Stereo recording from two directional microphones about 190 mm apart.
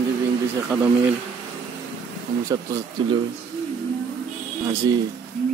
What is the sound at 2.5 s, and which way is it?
Speech, 20° right (ahead or behind).